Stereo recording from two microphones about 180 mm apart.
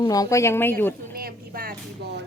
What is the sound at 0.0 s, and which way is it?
Speech, 20° left (ahead or behind).